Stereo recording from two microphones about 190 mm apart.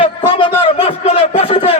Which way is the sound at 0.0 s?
25° left (ahead or behind).